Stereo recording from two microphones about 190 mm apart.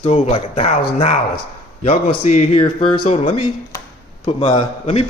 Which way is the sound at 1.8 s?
35° left (ahead or behind).